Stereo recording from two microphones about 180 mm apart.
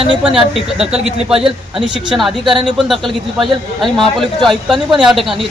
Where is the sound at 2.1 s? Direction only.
Centre (ahead or behind).